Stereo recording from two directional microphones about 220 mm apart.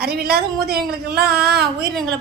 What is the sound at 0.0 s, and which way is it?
A woman's voice, 45° right (ahead or behind).